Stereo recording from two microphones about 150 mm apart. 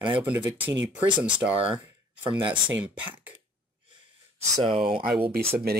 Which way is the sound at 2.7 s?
10° right (ahead or behind).